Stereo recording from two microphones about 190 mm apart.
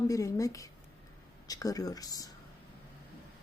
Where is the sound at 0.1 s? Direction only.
15° left (ahead or behind).